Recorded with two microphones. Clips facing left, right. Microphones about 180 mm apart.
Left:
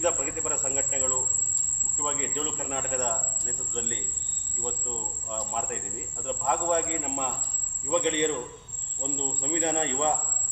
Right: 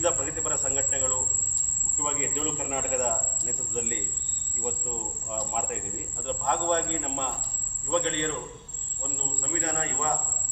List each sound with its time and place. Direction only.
0.0 s cricket: 5° left (ahead or behind)
7.9 s a man's voice: 15° left (ahead or behind)
9.0 s cricket: 20° left (ahead or behind)